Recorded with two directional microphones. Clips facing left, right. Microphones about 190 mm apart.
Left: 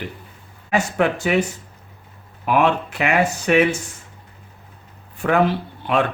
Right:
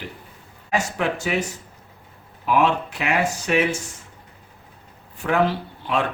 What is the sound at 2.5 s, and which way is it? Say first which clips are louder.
Speech: left 2 dB; 60° left (ahead or behind).